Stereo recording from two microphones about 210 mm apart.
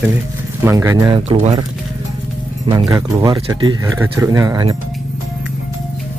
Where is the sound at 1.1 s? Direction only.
25° right (ahead or behind).